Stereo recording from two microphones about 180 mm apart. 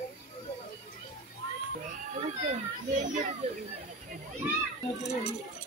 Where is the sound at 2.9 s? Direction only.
45° right (ahead or behind).